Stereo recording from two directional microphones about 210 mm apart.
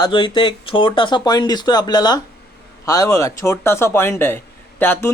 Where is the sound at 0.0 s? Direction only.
20° left (ahead or behind).